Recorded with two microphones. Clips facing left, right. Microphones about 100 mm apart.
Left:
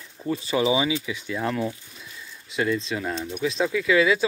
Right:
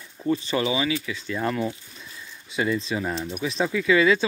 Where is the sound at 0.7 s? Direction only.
15° left (ahead or behind).